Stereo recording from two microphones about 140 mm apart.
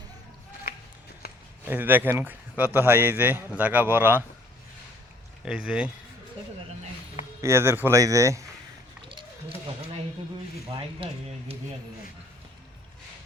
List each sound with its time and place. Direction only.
1.2 s a sound: 90° left
1.6 s speech: 15° right (ahead or behind)
5.5 s speech: 5° right (ahead or behind)
7.4 s speech: 20° right (ahead or behind)